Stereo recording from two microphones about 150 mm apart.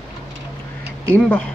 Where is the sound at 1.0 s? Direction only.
10° left (ahead or behind).